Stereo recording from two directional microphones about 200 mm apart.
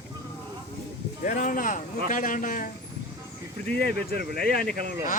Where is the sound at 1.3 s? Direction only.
45° left (ahead or behind).